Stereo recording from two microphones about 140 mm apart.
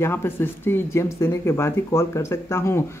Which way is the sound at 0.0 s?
15° left (ahead or behind).